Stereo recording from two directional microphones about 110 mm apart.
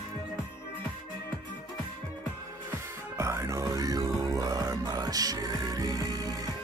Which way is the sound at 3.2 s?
25° right (ahead or behind).